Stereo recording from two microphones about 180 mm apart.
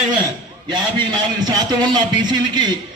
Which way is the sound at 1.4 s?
20° right (ahead or behind).